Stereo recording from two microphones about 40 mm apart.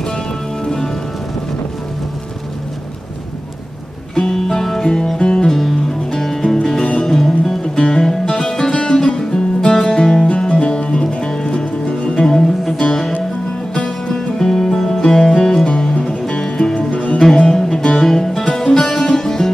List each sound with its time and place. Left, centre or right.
4.1 s music: centre
5.6 s music: centre; by 12.4 s left
14.0 s music: centre
15.6 s music: left
16.7 s music: left
17.2 s music: centre